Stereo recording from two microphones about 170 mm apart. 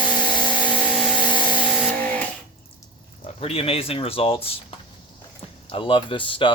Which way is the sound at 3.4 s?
35° left (ahead or behind).